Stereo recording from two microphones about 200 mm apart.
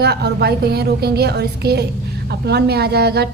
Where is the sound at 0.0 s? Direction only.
55° right (ahead or behind).